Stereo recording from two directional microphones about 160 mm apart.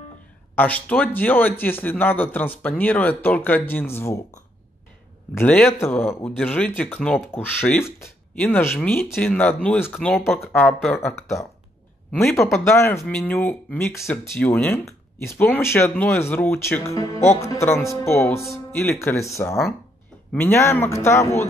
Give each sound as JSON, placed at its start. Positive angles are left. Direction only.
{"t": 0.6, "sound": "speech", "side_deg": 10}
{"t": 5.3, "sound": "speech", "side_deg": 15}
{"t": 9.9, "sound": "speech", "side_deg": 0}
{"t": 10.4, "sound": "speech", "side_deg": 15}
{"t": 12.1, "sound": "speech", "side_deg": 0}
{"t": 12.5, "sound": "speech", "side_deg": 15}
{"t": 12.9, "sound": "speech", "side_deg": 5}